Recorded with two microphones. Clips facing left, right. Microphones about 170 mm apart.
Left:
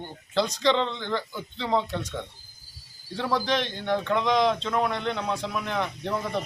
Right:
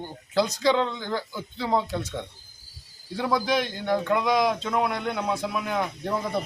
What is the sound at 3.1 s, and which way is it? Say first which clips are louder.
A man's voice: right 2 dB; 10° right (ahead or behind).